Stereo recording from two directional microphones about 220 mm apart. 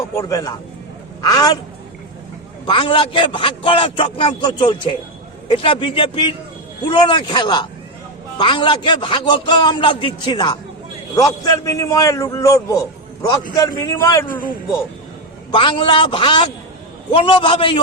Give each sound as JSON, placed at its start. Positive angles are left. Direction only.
{"t": 0.2, "sound": "a man's voice", "side_deg": 15}
{"t": 2.6, "sound": "a man's voice", "side_deg": 25}
{"t": 15.5, "sound": "a man's voice", "side_deg": 20}